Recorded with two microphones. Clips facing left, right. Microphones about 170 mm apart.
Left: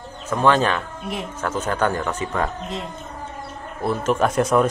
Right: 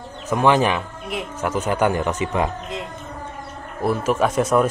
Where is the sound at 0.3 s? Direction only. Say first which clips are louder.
Right 1 dB; 15° right (ahead or behind).